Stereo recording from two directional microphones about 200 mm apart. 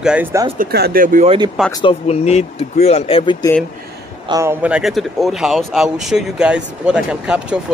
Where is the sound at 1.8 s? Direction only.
30° left (ahead or behind).